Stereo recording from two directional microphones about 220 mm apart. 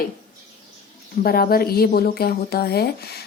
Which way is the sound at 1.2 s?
45° left (ahead or behind).